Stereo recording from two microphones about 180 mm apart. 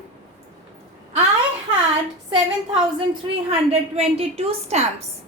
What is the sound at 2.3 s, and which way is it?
A woman's voice, 30° right (ahead or behind).